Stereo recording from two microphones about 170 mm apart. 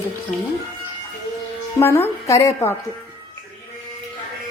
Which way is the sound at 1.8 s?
15° left (ahead or behind).